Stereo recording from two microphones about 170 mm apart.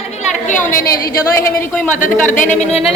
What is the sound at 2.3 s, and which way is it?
Speech, 50° left (ahead or behind).